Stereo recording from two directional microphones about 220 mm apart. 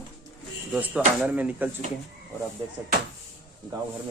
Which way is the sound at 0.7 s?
5° right (ahead or behind).